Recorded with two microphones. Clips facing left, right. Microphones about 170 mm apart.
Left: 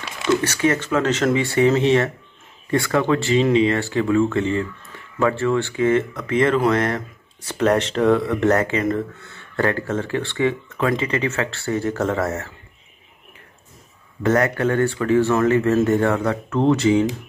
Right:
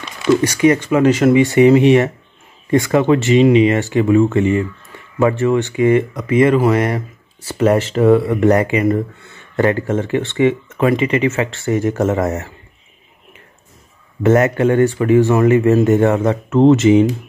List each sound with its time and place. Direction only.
0.4 s speech: 15° right (ahead or behind)
14.2 s speech: 20° right (ahead or behind)